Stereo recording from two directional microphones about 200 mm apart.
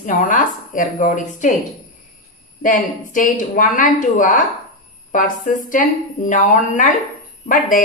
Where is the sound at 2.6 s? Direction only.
40° left (ahead or behind).